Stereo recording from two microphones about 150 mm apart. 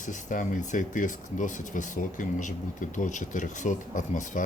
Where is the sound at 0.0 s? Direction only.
55° left (ahead or behind).